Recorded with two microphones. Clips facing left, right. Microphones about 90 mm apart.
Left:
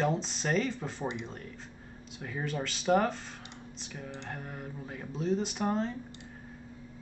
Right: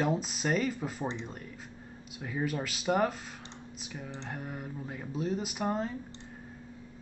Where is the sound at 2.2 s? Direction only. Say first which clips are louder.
Right 2 dB; 5° right (ahead or behind).